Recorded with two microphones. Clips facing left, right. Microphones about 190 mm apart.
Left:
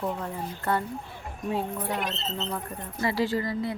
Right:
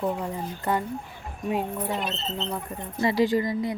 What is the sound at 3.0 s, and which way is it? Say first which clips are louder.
Speech: right 4 dB; 20° right (ahead or behind).